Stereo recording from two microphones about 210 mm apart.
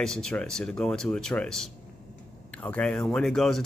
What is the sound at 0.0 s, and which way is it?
Speech, 5° left (ahead or behind).